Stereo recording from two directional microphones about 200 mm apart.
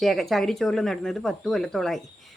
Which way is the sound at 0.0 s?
Centre (ahead or behind).